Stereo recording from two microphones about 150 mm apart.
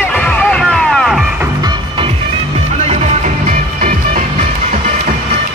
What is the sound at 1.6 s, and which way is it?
Music, 35° right (ahead or behind).